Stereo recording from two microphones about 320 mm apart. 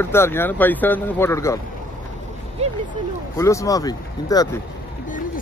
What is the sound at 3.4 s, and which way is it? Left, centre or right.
Speech, centre.